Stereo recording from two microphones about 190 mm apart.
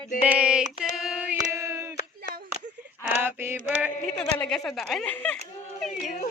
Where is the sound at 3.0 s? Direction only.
10° right (ahead or behind).